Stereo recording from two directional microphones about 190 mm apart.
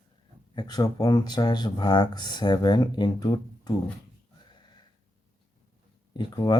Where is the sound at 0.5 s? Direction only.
20° left (ahead or behind).